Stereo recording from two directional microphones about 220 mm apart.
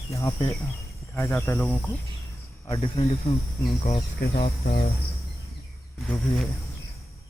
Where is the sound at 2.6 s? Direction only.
25° left (ahead or behind).